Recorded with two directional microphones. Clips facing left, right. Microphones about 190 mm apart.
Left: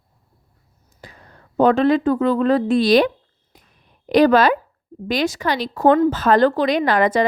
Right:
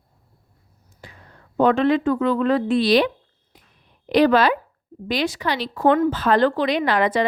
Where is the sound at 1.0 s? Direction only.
40° left (ahead or behind).